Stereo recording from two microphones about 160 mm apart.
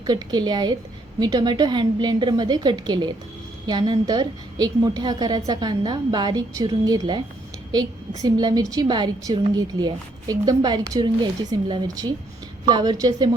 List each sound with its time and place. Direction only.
0.0 s a woman's voice: 25° right (ahead or behind)